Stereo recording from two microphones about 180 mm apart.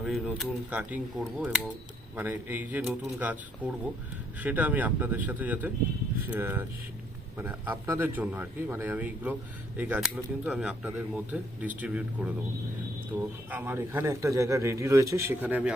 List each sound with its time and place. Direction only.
0.0 s a man's voice: centre (ahead or behind)
2.1 s a man's voice: 10° right (ahead or behind)